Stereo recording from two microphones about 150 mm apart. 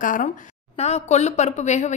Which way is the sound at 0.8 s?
45° left (ahead or behind).